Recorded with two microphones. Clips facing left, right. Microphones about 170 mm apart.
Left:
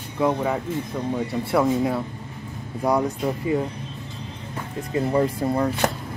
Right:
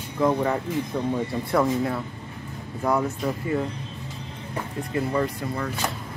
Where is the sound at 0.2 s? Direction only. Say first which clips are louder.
Even; 10° left (ahead or behind).